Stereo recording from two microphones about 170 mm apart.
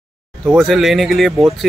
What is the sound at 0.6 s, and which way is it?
Speech, centre (ahead or behind).